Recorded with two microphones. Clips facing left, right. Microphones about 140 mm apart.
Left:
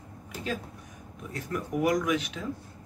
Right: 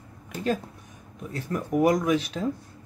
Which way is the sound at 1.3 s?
35° right (ahead or behind).